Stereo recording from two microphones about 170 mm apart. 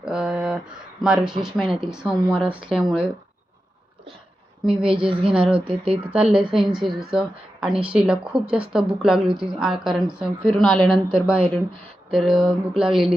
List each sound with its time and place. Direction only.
0.0 s a sound: 5° right (ahead or behind)
1.0 s a woman's voice: 5° right (ahead or behind)
1.6 s speech: 30° right (ahead or behind)
1.9 s a woman's voice: 5° right (ahead or behind)
4.6 s a woman's voice: 5° right (ahead or behind)
4.9 s speech: 30° right (ahead or behind)
6.6 s a woman's voice: centre (ahead or behind)
12.1 s a woman's voice: centre (ahead or behind)